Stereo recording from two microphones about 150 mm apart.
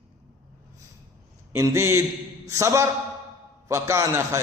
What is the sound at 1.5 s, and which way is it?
A man's voice, 20° right (ahead or behind).